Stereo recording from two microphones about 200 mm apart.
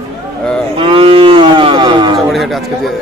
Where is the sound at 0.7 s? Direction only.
25° right (ahead or behind).